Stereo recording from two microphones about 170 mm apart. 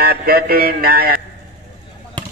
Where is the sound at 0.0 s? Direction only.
65° right (ahead or behind).